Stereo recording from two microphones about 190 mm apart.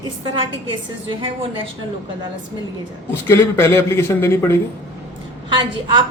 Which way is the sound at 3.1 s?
10° left (ahead or behind).